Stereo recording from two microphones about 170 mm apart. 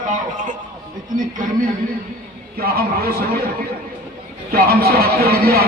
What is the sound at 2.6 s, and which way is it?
Speech, 65° right (ahead or behind).